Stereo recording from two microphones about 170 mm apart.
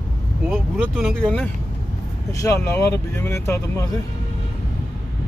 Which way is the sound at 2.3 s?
20° left (ahead or behind).